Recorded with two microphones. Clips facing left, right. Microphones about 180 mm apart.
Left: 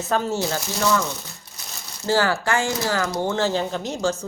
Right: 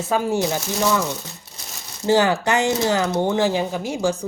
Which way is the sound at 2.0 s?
20° right (ahead or behind).